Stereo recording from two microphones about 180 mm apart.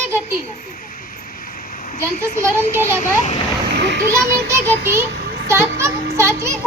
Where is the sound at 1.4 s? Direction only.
50° left (ahead or behind).